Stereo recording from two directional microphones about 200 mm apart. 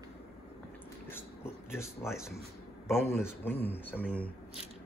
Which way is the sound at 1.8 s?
Centre (ahead or behind).